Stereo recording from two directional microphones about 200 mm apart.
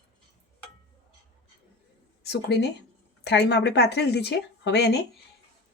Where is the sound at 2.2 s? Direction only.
60° left (ahead or behind).